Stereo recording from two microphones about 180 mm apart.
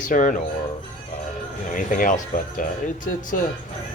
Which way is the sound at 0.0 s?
45° left (ahead or behind).